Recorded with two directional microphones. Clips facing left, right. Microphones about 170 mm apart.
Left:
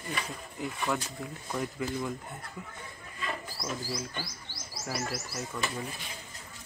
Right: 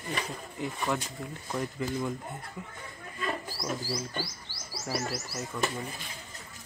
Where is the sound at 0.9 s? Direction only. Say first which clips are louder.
Right 1 dB; centre (ahead or behind).